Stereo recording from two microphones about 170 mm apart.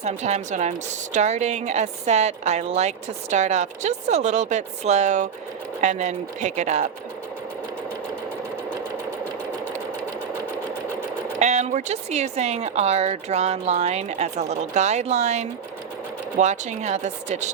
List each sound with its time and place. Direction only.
0.0 s a woman's voice: 40° right (ahead or behind)
11.3 s a woman's voice: 40° right (ahead or behind)